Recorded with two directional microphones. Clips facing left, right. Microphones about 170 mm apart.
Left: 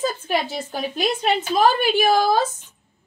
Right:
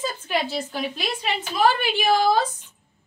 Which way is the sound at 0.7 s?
45° left (ahead or behind).